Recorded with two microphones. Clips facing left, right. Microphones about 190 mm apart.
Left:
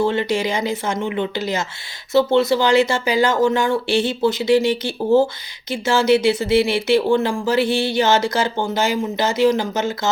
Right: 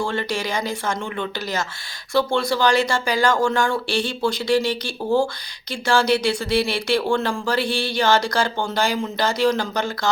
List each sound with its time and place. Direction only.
0.0 s speech: 20° left (ahead or behind)